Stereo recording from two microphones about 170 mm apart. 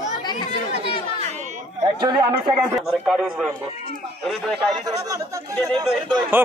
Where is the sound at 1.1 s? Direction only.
40° right (ahead or behind).